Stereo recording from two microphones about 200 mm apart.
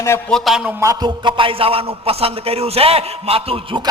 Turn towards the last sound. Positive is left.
turn(degrees=-25)  # may be behind; listen again after turning